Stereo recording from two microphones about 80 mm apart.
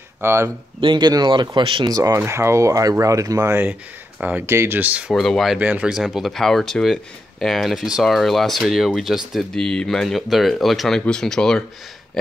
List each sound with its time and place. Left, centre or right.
0.2 s speech: right
0.7 s speech: right
1.9 s speech: right
2.1 s speech: right
3.3 s speech: right
4.2 s speech: centre
4.5 s speech: right
5.1 s speech: centre
5.6 s speech: centre
6.0 s speech: centre